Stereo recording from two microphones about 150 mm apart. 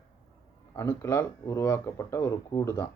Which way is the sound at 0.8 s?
20° left (ahead or behind).